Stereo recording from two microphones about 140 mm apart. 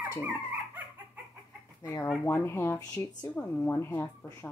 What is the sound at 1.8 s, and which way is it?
Speech, 20° left (ahead or behind).